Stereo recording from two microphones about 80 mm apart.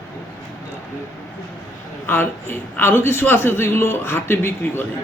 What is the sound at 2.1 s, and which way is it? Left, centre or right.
A man's voice, left.